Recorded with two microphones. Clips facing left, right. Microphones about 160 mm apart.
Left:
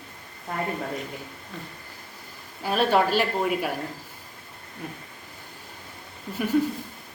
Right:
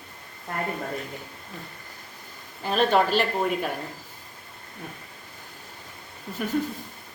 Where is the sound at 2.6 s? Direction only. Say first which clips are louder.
Even; 5° left (ahead or behind).